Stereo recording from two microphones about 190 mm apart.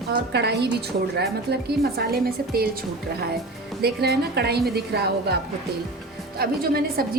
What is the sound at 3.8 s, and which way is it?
A woman's voice, 55° right (ahead or behind).